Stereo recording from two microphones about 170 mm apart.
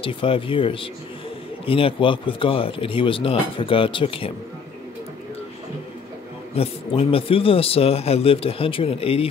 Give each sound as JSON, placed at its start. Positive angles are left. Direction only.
{"t": 0.0, "sound": "speech", "side_deg": 30}
{"t": 6.5, "sound": "speech", "side_deg": 35}